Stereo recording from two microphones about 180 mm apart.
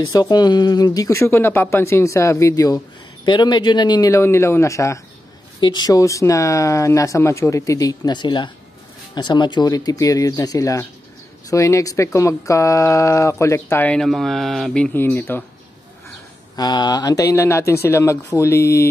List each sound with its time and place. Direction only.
0.1 s speech: 20° left (ahead or behind)
16.5 s speech: 25° left (ahead or behind)